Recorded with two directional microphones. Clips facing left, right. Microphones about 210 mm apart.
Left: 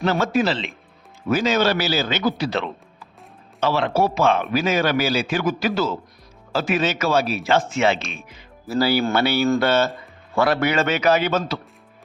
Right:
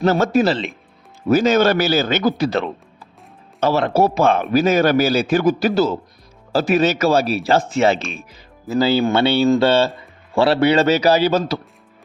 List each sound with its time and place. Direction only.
0.0 s speech: 45° right (ahead or behind)
8.6 s speech: 20° right (ahead or behind); by 11.6 s 35° right (ahead or behind)